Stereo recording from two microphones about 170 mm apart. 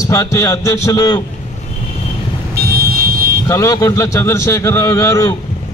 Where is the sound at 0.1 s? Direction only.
15° left (ahead or behind).